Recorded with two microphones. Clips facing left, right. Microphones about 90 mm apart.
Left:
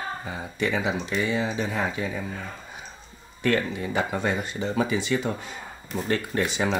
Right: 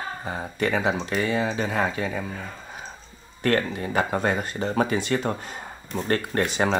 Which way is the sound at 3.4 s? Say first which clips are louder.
Right 1 dB; 50° right (ahead or behind).